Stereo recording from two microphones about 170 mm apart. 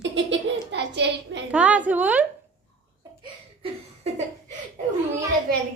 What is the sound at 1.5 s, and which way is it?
Speech, 10° right (ahead or behind).